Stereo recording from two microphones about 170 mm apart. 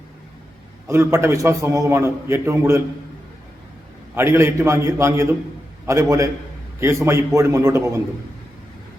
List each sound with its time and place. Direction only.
0.9 s a man's voice: 15° right (ahead or behind)
4.1 s a man's voice: 15° right (ahead or behind)